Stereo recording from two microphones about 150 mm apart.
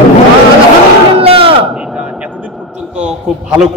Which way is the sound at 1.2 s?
40° right (ahead or behind).